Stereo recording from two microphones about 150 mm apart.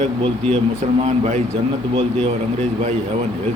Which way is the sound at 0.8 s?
45° right (ahead or behind).